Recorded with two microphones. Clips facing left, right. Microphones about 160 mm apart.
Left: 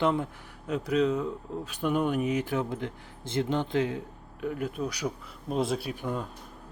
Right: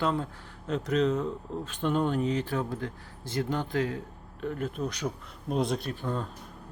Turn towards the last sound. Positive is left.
turn(degrees=10)  # may be behind; listen again after turning